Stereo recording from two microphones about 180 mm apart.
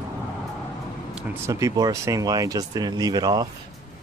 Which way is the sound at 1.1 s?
15° right (ahead or behind).